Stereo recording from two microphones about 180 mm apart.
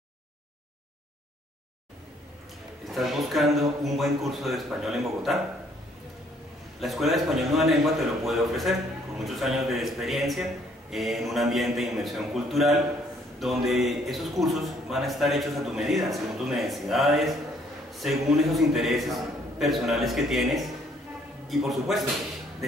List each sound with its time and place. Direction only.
2.9 s a man's voice: centre (ahead or behind)
6.8 s a man's voice: centre (ahead or behind)